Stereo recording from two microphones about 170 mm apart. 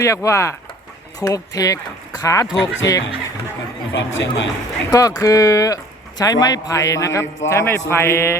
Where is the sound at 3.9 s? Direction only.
90° left.